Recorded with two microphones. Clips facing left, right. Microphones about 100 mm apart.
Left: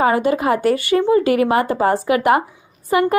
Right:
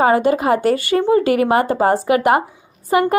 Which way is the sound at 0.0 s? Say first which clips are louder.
Right 2 dB; 35° right (ahead or behind).